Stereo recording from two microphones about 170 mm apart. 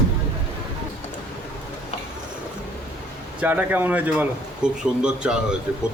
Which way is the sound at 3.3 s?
10° right (ahead or behind).